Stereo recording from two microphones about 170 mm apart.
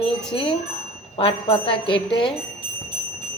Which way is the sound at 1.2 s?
30° left (ahead or behind).